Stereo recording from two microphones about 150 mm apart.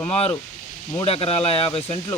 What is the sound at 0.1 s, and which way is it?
Speech, 45° left (ahead or behind).